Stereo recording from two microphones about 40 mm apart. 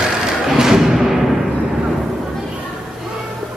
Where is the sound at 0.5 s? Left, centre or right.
Centre.